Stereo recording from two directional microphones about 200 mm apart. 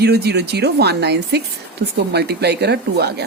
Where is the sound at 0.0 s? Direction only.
55° right (ahead or behind).